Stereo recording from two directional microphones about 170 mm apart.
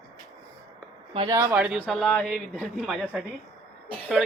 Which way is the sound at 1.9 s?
5° left (ahead or behind).